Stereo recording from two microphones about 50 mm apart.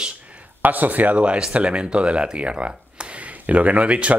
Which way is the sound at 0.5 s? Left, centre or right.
Right.